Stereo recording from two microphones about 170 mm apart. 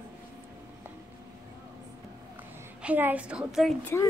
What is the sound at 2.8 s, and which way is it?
Speech, 10° right (ahead or behind).